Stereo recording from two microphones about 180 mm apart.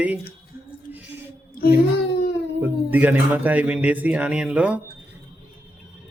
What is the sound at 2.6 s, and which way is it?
Speech, 10° right (ahead or behind).